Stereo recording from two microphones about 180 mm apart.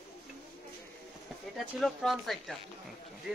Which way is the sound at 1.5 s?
Centre (ahead or behind).